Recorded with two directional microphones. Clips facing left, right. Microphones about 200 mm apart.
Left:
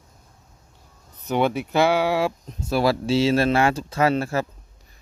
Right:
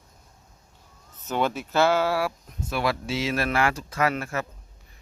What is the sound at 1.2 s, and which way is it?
Speech, 15° left (ahead or behind).